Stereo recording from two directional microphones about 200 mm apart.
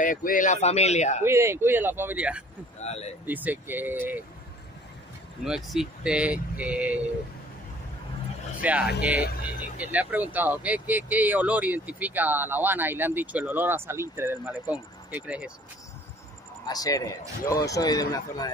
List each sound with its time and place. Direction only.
0.0 s a man's voice: 40° left (ahead or behind)
1.2 s speech: 10° right (ahead or behind)
2.8 s a man's voice: 30° left (ahead or behind)
3.3 s speech: 10° right (ahead or behind)
5.4 s speech: 5° right (ahead or behind)
8.6 s speech: 5° right (ahead or behind)
9.2 s speech: 45° left (ahead or behind)
9.6 s speech: 5° right (ahead or behind)
16.6 s a man's voice: 20° left (ahead or behind)